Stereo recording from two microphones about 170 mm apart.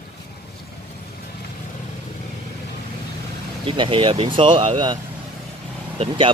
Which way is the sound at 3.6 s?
30° right (ahead or behind).